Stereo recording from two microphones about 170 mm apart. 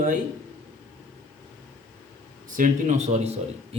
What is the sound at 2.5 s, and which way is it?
Speech, 45° right (ahead or behind).